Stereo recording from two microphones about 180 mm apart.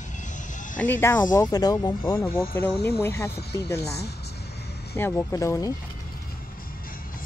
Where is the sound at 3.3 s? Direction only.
65° left (ahead or behind).